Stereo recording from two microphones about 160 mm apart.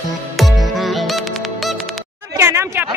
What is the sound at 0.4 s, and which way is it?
Music, centre (ahead or behind).